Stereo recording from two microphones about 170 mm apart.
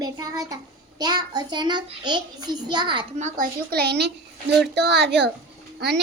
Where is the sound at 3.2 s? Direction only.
50° right (ahead or behind).